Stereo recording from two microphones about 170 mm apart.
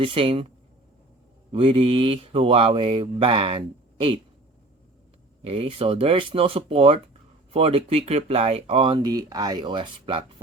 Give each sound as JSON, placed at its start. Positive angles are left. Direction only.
{"t": 0.0, "sound": "speech", "side_deg": -30}
{"t": 1.5, "sound": "speech", "side_deg": -30}
{"t": 5.4, "sound": "speech", "side_deg": -35}